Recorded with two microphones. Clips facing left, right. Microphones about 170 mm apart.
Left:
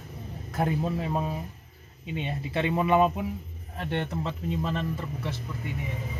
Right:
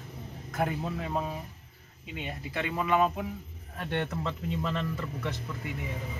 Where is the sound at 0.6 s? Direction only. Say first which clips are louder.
Left 3 dB; 30° left (ahead or behind).